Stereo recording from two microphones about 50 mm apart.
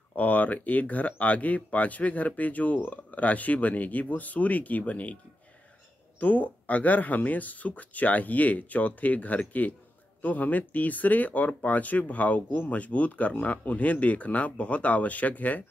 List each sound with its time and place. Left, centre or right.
0.1 s speech: left